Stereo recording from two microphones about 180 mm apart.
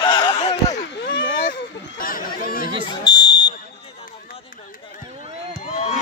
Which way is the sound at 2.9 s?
25° left (ahead or behind).